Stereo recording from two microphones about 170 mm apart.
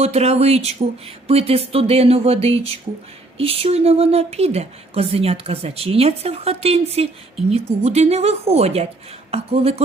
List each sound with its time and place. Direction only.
0.0 s speech: 40° right (ahead or behind)